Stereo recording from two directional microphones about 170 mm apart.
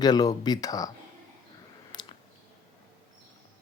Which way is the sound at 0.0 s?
25° left (ahead or behind).